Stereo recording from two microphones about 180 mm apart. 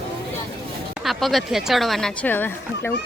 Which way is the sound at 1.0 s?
Centre (ahead or behind).